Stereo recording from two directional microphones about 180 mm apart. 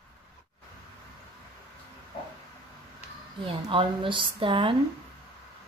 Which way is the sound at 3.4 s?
30° right (ahead or behind).